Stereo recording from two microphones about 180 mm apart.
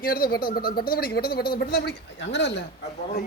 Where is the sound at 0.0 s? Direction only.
55° left (ahead or behind); by 2.5 s 75° left (ahead or behind).